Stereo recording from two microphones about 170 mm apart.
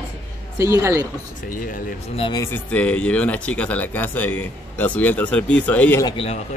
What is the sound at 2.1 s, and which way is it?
Speech, 35° left (ahead or behind).